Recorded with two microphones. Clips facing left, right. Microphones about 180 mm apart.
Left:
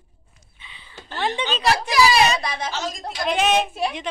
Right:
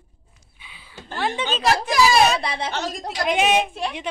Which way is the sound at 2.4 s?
30° right (ahead or behind).